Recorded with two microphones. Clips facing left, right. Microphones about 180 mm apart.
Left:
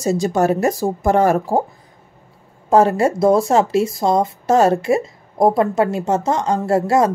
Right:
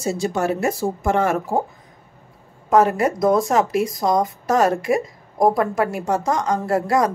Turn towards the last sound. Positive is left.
turn(degrees=25)  # may be behind; listen again after turning